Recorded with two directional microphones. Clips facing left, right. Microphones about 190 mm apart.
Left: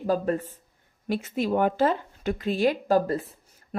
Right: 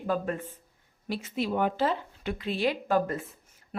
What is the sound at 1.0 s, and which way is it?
Speech, 50° left (ahead or behind).